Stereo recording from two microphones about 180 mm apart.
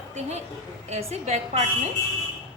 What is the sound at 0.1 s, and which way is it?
A woman's voice, 40° right (ahead or behind).